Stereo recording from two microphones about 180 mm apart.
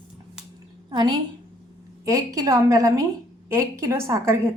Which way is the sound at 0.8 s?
25° right (ahead or behind).